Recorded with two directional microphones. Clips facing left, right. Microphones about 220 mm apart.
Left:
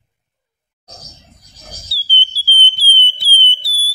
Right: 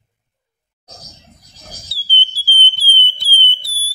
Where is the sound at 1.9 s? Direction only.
15° right (ahead or behind).